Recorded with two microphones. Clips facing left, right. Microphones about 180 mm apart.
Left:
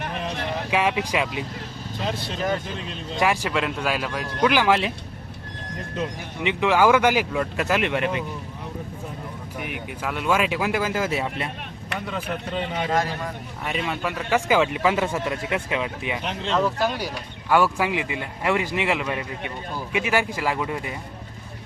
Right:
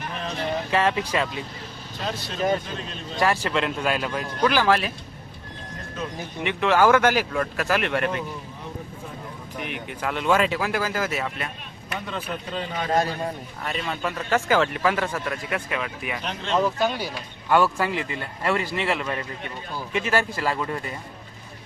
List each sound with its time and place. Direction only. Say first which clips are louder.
0.2 s a sound: right 3 dB; 15° left (ahead or behind)
2.0 s speech: right 2 dB; 20° left (ahead or behind)
3.6 s speech: right 1 dB; 5° left (ahead or behind)
4.4 s speech: left 1 dB; 15° left (ahead or behind)
6.0 s speech: left 2 dB; 15° left (ahead or behind)
9.6 s speech: right 1 dB; 5° left (ahead or behind); by 11.4 s 25° left (ahead or behind)
12.0 s speech: left 3 dB; 15° left (ahead or behind)
12.9 s a man's voice: right 4 dB; 25° right (ahead or behind)
13.7 s speech: left 1 dB; 10° left (ahead or behind)
16.6 s speech: right 1 dB; centre (ahead or behind)
17.5 s speech: even; 10° left (ahead or behind)